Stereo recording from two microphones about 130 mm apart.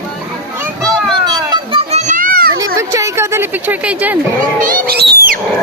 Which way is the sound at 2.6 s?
25° right (ahead or behind).